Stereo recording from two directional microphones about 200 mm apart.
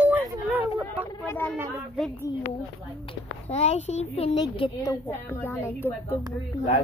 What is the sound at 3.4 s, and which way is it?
A woman's voice, 30° left (ahead or behind).